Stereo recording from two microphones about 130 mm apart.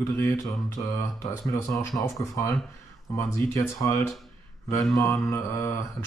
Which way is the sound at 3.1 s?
20° left (ahead or behind).